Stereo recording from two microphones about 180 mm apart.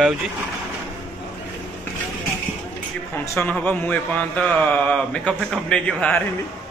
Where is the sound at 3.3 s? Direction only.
10° left (ahead or behind).